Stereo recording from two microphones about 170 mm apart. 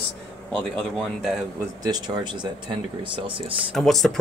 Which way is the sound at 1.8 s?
25° right (ahead or behind).